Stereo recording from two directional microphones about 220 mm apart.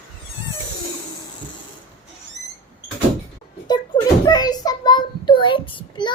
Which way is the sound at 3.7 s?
20° left (ahead or behind).